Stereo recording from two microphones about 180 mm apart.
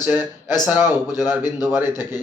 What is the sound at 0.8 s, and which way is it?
Speech, 20° left (ahead or behind).